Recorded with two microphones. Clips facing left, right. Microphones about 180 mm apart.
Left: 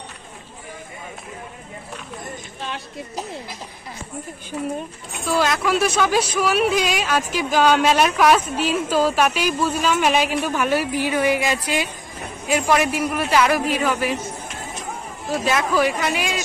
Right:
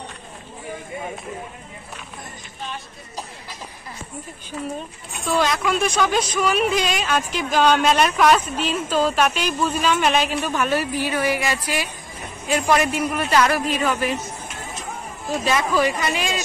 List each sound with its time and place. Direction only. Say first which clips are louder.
5.3 s speech: left 1 dB; 5° left (ahead or behind); by 11.9 s 20° left (ahead or behind)
12.4 s speech: even; 10° left (ahead or behind)
15.4 s speech: even; 10° left (ahead or behind)